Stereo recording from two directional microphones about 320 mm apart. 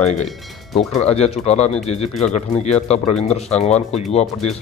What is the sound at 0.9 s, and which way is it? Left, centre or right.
Speech, centre.